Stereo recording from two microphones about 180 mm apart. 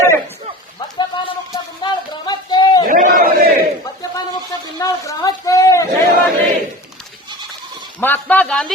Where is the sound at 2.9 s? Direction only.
55° right (ahead or behind).